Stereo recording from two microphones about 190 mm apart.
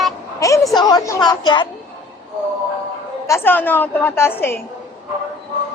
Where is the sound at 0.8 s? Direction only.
20° left (ahead or behind).